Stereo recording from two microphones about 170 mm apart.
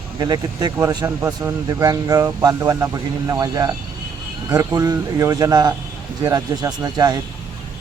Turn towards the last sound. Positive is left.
turn(degrees=-25)  # may be behind; listen again after turning